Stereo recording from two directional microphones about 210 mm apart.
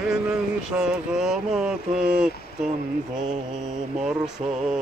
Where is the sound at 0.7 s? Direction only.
5° right (ahead or behind).